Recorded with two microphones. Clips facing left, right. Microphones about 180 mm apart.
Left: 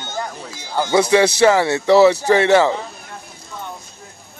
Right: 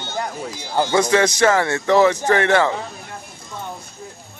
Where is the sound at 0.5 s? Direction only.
15° right (ahead or behind).